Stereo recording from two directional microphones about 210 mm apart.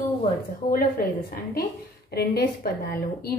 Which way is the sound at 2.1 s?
50° left (ahead or behind).